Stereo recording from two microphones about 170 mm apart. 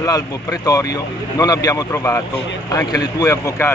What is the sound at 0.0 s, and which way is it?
Speech, 20° left (ahead or behind).